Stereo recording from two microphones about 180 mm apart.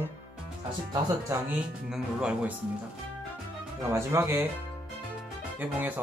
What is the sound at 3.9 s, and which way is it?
Speech, 15° right (ahead or behind).